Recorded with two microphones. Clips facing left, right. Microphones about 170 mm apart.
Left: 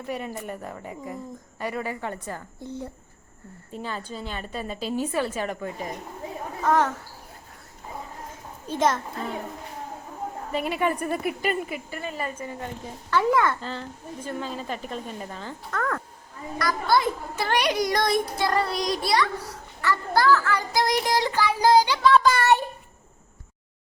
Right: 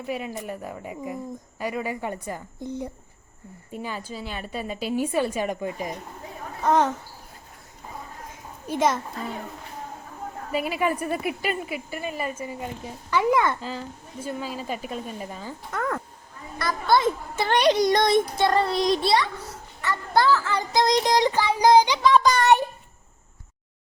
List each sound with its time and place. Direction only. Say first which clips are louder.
0.3 s a woman's voice: right 1 dB; 10° right (ahead or behind)
8.6 s a woman's voice: even; 10° right (ahead or behind)
10.5 s a woman's voice: right 1 dB; 5° right (ahead or behind)
13.6 s a woman's voice: right 1 dB; 5° right (ahead or behind)